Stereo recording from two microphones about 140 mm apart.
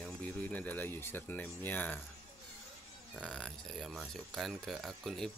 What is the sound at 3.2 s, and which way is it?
Speech, 5° left (ahead or behind).